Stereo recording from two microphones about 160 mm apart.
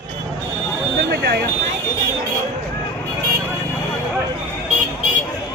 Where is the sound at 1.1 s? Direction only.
80° right.